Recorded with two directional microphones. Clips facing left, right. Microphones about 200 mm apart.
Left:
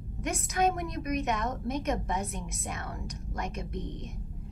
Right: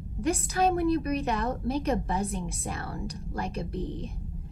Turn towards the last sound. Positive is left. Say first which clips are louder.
# right 4 dB
turn(degrees=-30)  # may be behind; listen again after turning